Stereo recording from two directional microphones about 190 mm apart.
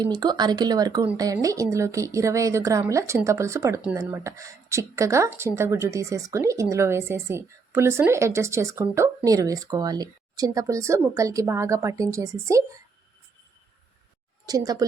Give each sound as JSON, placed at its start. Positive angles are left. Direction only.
{"t": 0.0, "sound": "a woman's voice", "side_deg": -20}
{"t": 14.4, "sound": "speech", "side_deg": -20}